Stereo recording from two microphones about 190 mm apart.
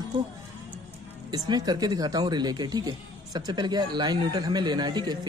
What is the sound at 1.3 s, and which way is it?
Speech, 20° right (ahead or behind).